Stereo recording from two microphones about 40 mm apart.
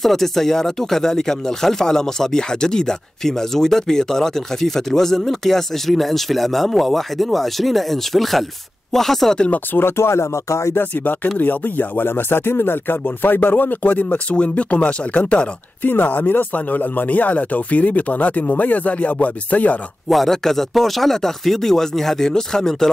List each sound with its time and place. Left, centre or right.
0.0 s speech: centre
9.8 s speech: left
11.3 s speech: left
12.0 s speech: left
15.8 s speech: left
20.1 s speech: centre